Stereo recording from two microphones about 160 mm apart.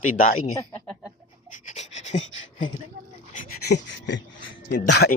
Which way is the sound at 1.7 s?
45° left (ahead or behind).